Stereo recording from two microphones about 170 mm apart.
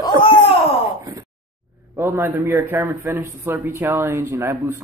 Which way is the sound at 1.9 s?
15° right (ahead or behind).